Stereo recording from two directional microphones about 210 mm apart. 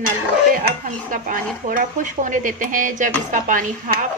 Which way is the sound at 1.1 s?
40° right (ahead or behind).